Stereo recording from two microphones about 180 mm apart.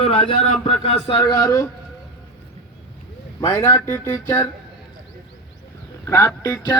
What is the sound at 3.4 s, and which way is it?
Speech, 10° left (ahead or behind).